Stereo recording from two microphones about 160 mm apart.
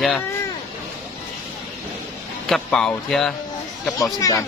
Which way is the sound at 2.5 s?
5° left (ahead or behind).